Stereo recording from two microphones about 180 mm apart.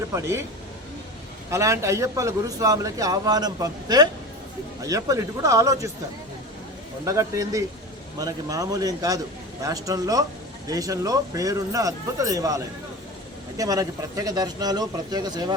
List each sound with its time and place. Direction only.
0.1 s speech: 15° right (ahead or behind)
1.5 s a man's voice: 15° right (ahead or behind)
7.0 s a man's voice: 15° right (ahead or behind)